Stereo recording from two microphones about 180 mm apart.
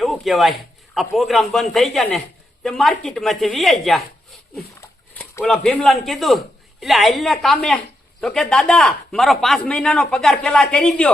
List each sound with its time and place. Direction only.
0.0 s a man's voice: centre (ahead or behind)
4.8 s dog: 15° left (ahead or behind)
5.4 s a man's voice: 5° left (ahead or behind)